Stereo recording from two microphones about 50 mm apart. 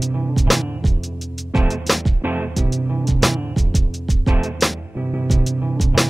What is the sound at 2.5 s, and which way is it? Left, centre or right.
Music, centre.